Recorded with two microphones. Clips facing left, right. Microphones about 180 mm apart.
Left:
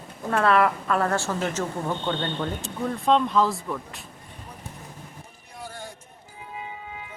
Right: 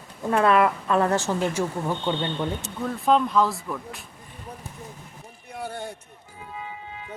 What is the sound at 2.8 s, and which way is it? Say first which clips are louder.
Speech: even; centre (ahead or behind).